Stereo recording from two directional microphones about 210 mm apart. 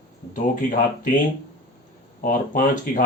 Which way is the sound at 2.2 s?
40° left (ahead or behind).